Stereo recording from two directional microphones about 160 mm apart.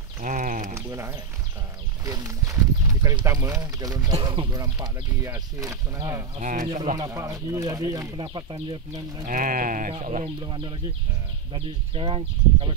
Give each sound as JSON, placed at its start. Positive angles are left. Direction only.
{"t": 0.2, "sound": "a sound", "side_deg": -55}
{"t": 0.7, "sound": "speech", "side_deg": -20}
{"t": 6.4, "sound": "speech", "side_deg": -50}
{"t": 7.0, "sound": "speech", "side_deg": -20}
{"t": 9.2, "sound": "speech", "side_deg": -55}
{"t": 10.4, "sound": "speech", "side_deg": -30}